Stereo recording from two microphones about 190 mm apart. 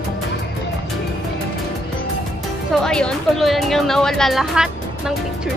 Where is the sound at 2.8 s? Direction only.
5° left (ahead or behind).